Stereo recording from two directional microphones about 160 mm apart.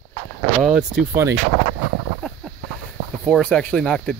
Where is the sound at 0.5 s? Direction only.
5° right (ahead or behind).